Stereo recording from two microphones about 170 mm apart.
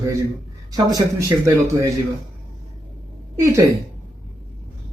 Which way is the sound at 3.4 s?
15° right (ahead or behind).